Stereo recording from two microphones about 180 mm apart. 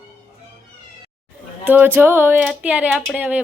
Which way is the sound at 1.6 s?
10° right (ahead or behind).